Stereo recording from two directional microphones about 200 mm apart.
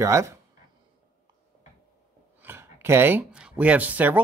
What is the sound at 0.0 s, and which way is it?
Speech, 15° right (ahead or behind).